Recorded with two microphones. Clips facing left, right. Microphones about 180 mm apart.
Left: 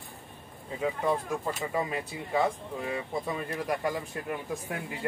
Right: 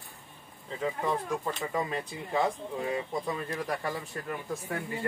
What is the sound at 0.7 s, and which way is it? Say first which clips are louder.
Speech: left 2 dB; 10° left (ahead or behind).